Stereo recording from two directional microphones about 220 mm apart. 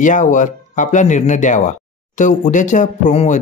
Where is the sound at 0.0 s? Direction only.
35° left (ahead or behind).